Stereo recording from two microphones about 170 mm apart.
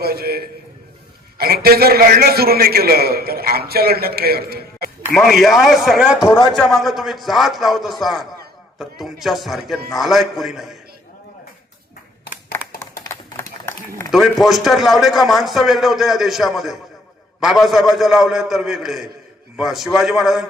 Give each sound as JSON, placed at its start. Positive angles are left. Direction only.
{"t": 0.0, "sound": "a man's voice", "side_deg": -65}
{"t": 5.1, "sound": "a man's voice", "side_deg": 0}
{"t": 6.2, "sound": "a man's voice", "side_deg": 25}
{"t": 6.5, "sound": "a man's voice", "side_deg": 5}
{"t": 12.5, "sound": "a sound", "side_deg": 15}
{"t": 14.1, "sound": "a man's voice", "side_deg": 0}